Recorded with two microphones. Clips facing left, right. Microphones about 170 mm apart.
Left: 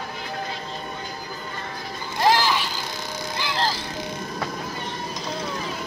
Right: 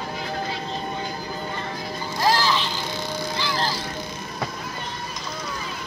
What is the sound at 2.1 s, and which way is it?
Music, 20° left (ahead or behind).